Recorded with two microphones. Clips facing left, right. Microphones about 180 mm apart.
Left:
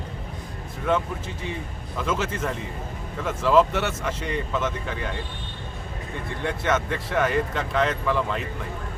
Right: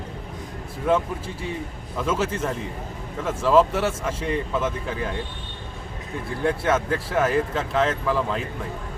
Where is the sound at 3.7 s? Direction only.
30° right (ahead or behind).